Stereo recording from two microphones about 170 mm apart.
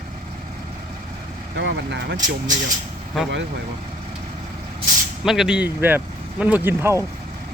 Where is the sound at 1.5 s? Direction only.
90° right.